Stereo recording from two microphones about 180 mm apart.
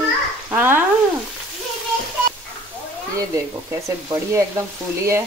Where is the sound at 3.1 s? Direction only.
20° right (ahead or behind).